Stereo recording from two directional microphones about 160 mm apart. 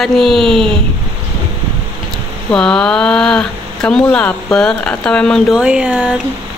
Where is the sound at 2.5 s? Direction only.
5° left (ahead or behind).